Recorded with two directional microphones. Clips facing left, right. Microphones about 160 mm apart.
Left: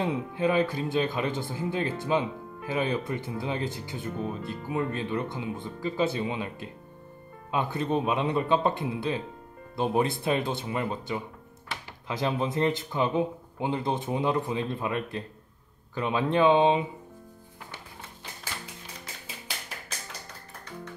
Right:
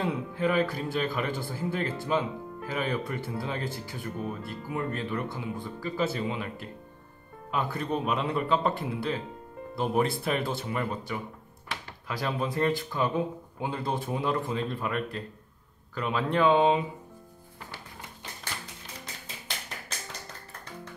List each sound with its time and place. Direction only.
0.0 s speech: 20° left (ahead or behind)